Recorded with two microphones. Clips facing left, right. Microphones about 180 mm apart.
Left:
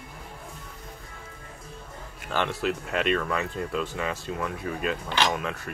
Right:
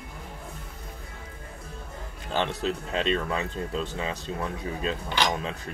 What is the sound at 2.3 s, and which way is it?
Speech, 25° right (ahead or behind).